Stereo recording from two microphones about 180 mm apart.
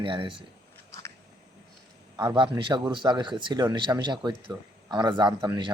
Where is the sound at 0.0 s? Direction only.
30° right (ahead or behind).